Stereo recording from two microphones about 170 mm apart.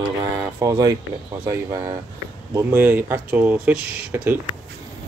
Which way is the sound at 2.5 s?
15° right (ahead or behind).